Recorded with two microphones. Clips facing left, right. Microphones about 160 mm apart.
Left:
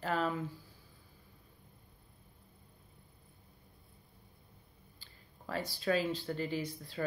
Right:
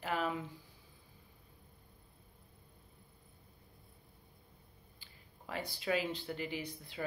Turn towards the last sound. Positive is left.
turn(degrees=-15)  # may be behind; listen again after turning